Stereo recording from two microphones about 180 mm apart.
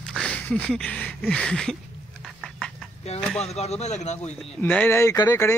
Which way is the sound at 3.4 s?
35° left (ahead or behind).